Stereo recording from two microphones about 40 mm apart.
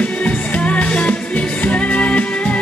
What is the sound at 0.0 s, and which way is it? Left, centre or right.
Music, left.